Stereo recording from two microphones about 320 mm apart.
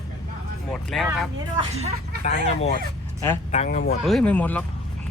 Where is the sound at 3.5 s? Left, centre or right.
Centre.